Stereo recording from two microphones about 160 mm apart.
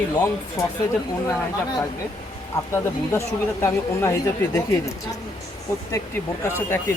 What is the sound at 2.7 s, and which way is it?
Speech, 15° left (ahead or behind).